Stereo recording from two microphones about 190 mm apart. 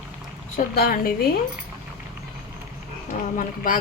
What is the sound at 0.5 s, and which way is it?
Speech, 50° left (ahead or behind).